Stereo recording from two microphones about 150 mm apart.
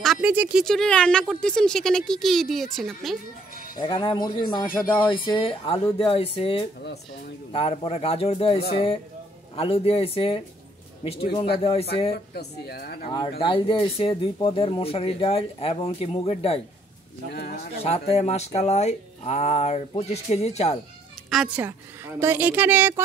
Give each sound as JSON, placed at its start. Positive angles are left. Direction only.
{"t": 0.0, "sound": "a woman's voice", "side_deg": 0}
{"t": 0.7, "sound": "speech", "side_deg": 5}
{"t": 3.8, "sound": "speech", "side_deg": 35}
{"t": 12.4, "sound": "speech", "side_deg": 90}
{"t": 13.4, "sound": "speech", "side_deg": 35}
{"t": 17.3, "sound": "speech", "side_deg": 90}
{"t": 17.8, "sound": "speech", "side_deg": 45}
{"t": 21.3, "sound": "speech", "side_deg": -5}
{"t": 22.2, "sound": "a woman's voice", "side_deg": -15}